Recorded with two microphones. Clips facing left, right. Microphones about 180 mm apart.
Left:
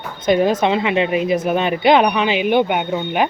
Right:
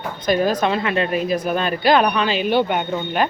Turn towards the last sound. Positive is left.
turn(degrees=15)  # may be behind; listen again after turning